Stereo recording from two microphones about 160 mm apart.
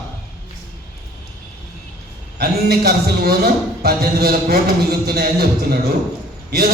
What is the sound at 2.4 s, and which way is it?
Music, 75° right (ahead or behind).